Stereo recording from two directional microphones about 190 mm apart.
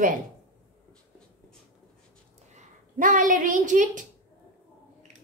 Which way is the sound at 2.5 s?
40° right (ahead or behind).